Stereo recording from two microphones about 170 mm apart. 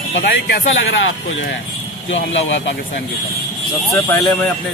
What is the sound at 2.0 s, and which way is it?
Speech, 90° left.